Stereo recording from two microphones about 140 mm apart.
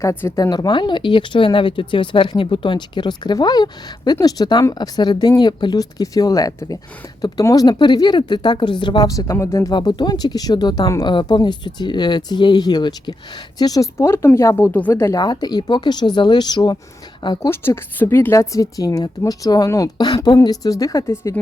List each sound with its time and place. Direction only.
0.0 s a woman's voice: 15° left (ahead or behind)
9.7 s a woman's voice: 30° left (ahead or behind)
17.5 s a woman's voice: 15° left (ahead or behind)